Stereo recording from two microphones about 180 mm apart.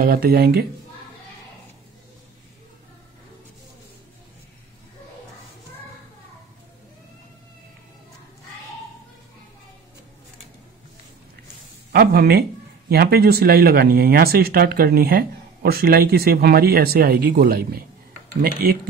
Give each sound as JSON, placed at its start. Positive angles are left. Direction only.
{"t": 0.0, "sound": "speech", "side_deg": -55}
{"t": 11.9, "sound": "speech", "side_deg": -55}